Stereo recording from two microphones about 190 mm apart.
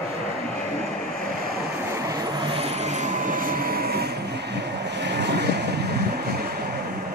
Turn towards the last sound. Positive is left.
turn(degrees=-60)  # may be behind; listen again after turning